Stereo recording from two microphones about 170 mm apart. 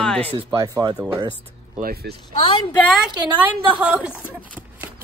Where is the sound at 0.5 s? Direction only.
20° right (ahead or behind).